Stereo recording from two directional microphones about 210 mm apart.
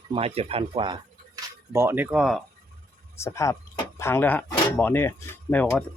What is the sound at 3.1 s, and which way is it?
Speech, 15° left (ahead or behind).